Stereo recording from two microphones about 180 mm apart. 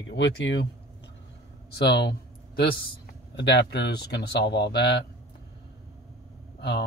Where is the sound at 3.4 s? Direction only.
65° left (ahead or behind).